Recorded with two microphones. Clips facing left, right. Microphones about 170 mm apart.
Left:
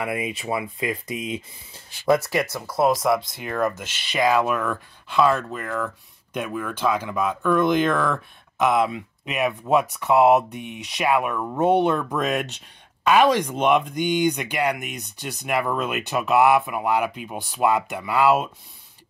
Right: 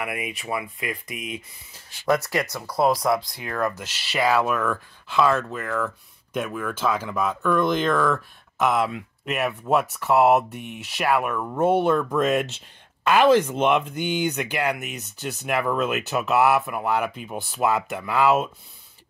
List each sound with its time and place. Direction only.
0.0 s speech: 25° left (ahead or behind)
2.0 s speech: 10° left (ahead or behind)
3.2 s speech: 20° left (ahead or behind)
3.4 s speech: 5° left (ahead or behind)